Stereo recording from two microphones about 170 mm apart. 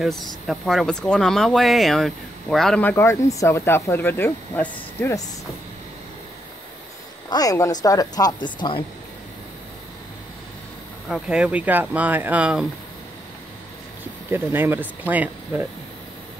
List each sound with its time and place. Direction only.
0.0 s speech: centre (ahead or behind)
7.2 s speech: 20° left (ahead or behind)
11.1 s speech: 5° right (ahead or behind)
14.3 s speech: 10° right (ahead or behind)